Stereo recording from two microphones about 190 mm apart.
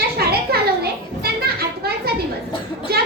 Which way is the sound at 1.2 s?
55° right (ahead or behind).